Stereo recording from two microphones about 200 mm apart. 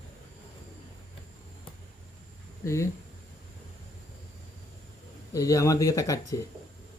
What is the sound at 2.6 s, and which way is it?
Speech, 15° left (ahead or behind).